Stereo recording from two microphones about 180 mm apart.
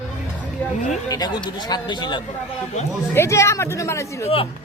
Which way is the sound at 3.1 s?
15° left (ahead or behind).